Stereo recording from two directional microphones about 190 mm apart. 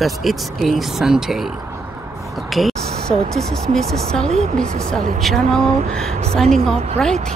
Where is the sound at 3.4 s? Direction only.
5° left (ahead or behind).